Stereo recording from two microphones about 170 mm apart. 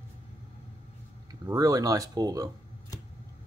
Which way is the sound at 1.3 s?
20° right (ahead or behind).